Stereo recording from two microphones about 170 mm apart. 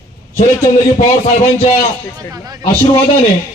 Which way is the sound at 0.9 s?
35° left (ahead or behind).